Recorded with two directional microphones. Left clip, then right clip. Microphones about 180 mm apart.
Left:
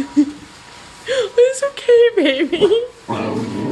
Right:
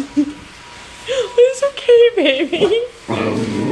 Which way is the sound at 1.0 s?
55° left (ahead or behind).